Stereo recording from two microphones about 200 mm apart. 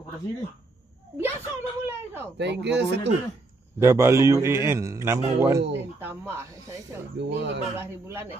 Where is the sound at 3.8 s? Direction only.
15° right (ahead or behind).